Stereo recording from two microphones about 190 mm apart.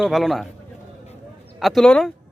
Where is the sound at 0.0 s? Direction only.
Centre (ahead or behind).